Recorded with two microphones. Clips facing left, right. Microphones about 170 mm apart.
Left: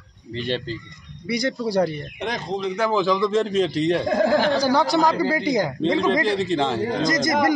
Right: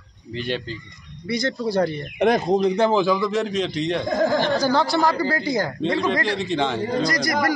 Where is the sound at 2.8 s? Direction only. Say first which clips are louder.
Right 1 dB; 15° right (ahead or behind).